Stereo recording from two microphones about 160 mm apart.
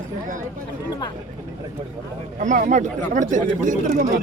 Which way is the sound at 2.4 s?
50° right (ahead or behind).